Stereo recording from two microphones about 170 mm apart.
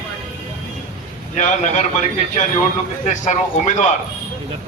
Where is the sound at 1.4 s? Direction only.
45° left (ahead or behind).